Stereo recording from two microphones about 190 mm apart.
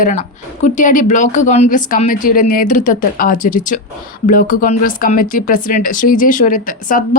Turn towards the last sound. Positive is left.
turn(degrees=45)  # may be behind; listen again after turning